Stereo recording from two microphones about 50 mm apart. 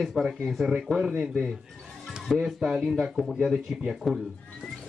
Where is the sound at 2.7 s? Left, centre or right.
Centre.